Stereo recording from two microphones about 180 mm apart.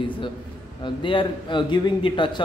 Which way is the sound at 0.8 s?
25° left (ahead or behind).